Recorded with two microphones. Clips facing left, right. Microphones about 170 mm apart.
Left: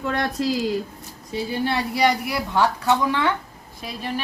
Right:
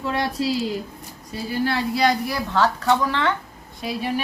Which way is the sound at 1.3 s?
25° left (ahead or behind).